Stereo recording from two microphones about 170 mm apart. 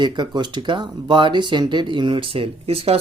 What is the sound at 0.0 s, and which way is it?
Speech, 25° right (ahead or behind).